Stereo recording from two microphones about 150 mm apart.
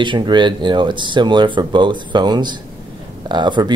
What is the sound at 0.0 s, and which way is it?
Speech, 30° right (ahead or behind).